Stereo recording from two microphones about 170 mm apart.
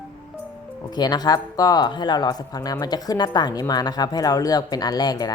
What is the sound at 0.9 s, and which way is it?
Speech, 25° left (ahead or behind).